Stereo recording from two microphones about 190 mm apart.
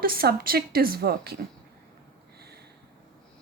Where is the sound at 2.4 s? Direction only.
60° right (ahead or behind).